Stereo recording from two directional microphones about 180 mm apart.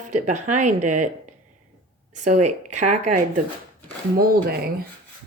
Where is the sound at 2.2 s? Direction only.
40° right (ahead or behind).